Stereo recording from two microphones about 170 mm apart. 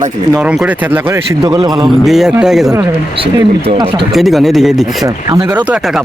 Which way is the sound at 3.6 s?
30° right (ahead or behind).